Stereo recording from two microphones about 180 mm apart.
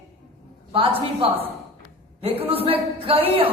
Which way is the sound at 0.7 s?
30° right (ahead or behind).